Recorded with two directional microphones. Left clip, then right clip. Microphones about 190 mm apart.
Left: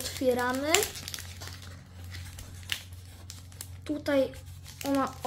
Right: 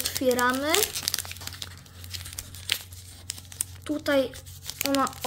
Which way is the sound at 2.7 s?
40° right (ahead or behind).